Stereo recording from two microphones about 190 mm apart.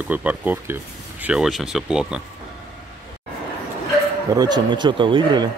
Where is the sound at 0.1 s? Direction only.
10° right (ahead or behind).